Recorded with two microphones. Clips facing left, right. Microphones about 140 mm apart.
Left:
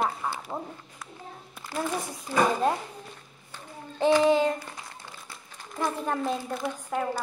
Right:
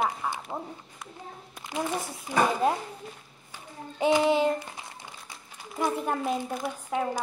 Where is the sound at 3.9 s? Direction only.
10° right (ahead or behind).